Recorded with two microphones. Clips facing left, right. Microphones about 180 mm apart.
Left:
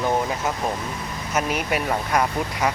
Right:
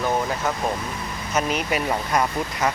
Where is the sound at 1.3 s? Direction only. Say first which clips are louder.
Even; 10° left (ahead or behind).